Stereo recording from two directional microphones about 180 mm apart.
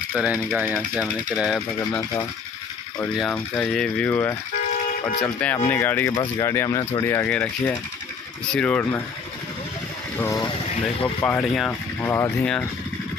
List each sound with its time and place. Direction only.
0.1 s speech: 5° right (ahead or behind)
3.2 s speech: centre (ahead or behind)
10.1 s speech: 15° left (ahead or behind)
12.0 s speech: 15° left (ahead or behind)